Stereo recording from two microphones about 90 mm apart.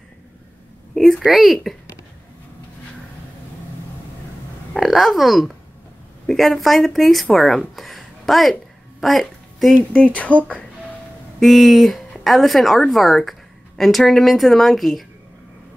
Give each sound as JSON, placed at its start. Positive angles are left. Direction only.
{"t": 0.9, "sound": "speech", "side_deg": 0}
{"t": 4.7, "sound": "speech", "side_deg": 0}
{"t": 9.0, "sound": "a sound", "side_deg": 0}
{"t": 9.9, "sound": "speech", "side_deg": 15}
{"t": 11.3, "sound": "speech", "side_deg": 0}